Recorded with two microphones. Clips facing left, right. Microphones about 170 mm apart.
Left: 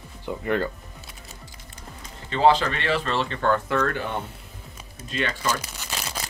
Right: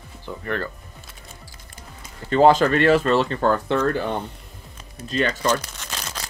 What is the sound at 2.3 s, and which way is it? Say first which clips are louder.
Speech: right 5 dB; 45° right (ahead or behind).